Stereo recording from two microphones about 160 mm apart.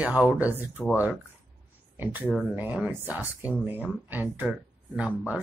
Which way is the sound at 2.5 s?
10° right (ahead or behind).